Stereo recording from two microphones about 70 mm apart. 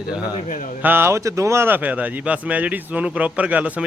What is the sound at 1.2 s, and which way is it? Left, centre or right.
Speech, right.